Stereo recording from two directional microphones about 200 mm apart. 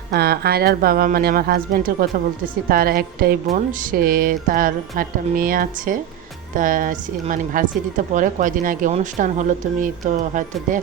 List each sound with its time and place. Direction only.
0.1 s a woman's voice: 50° right (ahead or behind)